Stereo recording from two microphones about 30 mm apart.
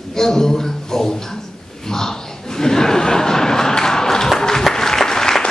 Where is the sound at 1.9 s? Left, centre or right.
Centre.